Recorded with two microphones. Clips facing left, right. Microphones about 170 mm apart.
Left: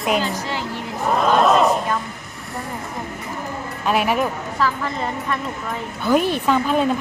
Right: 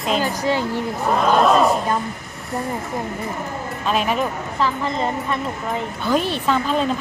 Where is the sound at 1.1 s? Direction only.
Centre (ahead or behind).